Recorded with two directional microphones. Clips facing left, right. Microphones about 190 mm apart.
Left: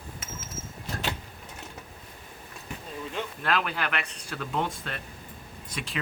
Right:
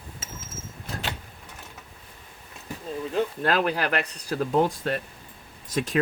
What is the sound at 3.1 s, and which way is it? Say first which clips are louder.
Speech: right 5 dB; 40° right (ahead or behind).